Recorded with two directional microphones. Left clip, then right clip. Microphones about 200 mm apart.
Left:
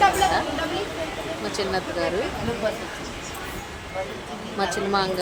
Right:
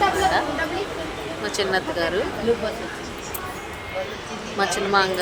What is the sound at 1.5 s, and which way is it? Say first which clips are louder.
Speech: right 4 dB; 20° right (ahead or behind).